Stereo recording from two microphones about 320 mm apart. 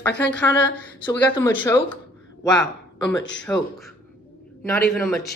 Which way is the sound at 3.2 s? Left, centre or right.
Left.